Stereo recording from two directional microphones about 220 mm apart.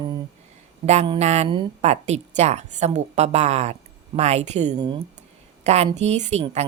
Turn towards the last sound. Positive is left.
turn(degrees=-30)  # may be behind; listen again after turning